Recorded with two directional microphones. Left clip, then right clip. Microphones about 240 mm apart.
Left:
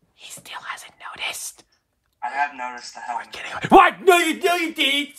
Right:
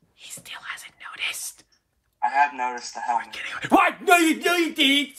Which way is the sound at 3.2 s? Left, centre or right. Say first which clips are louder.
Left 2 dB; centre.